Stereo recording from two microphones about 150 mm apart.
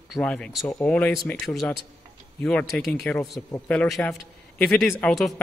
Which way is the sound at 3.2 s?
20° left (ahead or behind).